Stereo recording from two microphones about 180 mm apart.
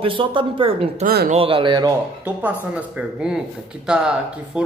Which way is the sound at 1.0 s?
55° right (ahead or behind).